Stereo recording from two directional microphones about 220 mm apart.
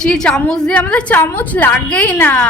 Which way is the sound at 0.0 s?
5° left (ahead or behind).